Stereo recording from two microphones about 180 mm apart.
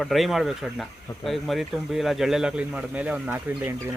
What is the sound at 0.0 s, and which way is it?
Speech, centre (ahead or behind).